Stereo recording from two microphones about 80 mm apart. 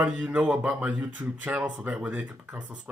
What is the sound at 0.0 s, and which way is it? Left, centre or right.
Speech, centre.